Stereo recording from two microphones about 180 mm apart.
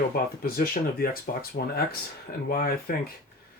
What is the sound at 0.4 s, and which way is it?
Speech, 55° left (ahead or behind).